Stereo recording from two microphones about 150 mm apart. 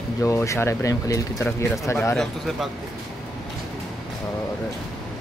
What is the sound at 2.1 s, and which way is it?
Speech, 5° left (ahead or behind).